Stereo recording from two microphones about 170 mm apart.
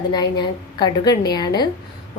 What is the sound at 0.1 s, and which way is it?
Speech, 25° left (ahead or behind).